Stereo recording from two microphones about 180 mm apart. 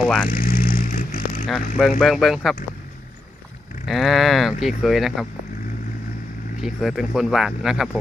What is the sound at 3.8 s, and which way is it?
Speech, centre (ahead or behind).